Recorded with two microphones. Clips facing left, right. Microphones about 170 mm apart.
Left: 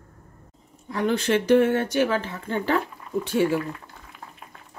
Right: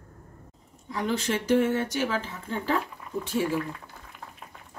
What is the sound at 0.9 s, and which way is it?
Speech, 60° left (ahead or behind).